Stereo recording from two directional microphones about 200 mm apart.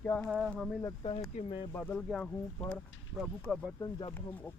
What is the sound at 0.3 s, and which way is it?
Speech, 5° right (ahead or behind).